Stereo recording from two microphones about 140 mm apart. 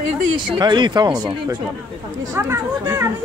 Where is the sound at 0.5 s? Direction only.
35° right (ahead or behind).